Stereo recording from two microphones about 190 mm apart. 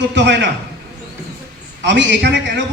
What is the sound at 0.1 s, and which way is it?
Speech, 65° right (ahead or behind).